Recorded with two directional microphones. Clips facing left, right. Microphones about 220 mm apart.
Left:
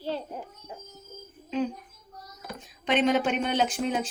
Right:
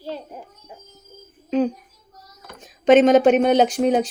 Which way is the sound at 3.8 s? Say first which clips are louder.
Right 10 dB; 40° right (ahead or behind).